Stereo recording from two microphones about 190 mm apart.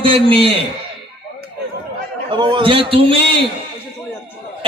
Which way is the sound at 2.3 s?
25° right (ahead or behind).